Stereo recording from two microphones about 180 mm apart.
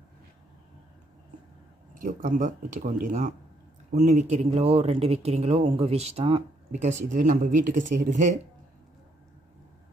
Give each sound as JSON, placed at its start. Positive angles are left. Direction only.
{"t": 2.0, "sound": "speech", "side_deg": -45}